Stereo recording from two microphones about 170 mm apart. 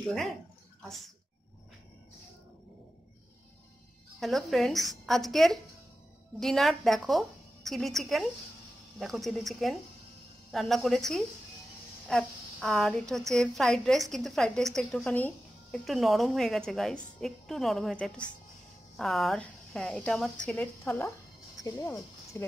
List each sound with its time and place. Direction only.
0.8 s a woman's voice: centre (ahead or behind)
4.2 s a woman's voice: centre (ahead or behind); by 21.9 s 15° left (ahead or behind)